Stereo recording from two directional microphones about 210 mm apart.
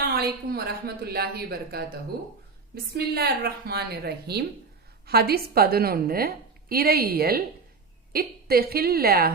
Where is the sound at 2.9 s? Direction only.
50° right (ahead or behind).